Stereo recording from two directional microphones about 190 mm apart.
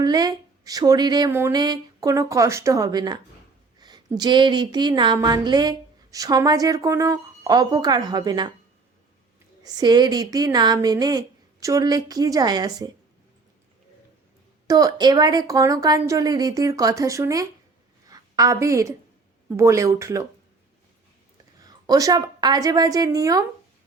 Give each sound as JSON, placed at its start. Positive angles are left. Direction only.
{"t": 0.0, "sound": "speech", "side_deg": -20}
{"t": 9.6, "sound": "speech", "side_deg": -20}
{"t": 14.7, "sound": "a woman's voice", "side_deg": -20}
{"t": 21.6, "sound": "a woman's voice", "side_deg": -20}